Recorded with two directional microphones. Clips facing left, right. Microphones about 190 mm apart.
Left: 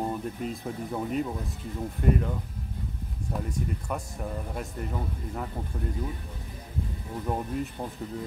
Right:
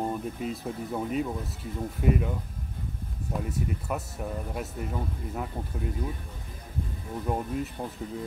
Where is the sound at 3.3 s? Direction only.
5° right (ahead or behind).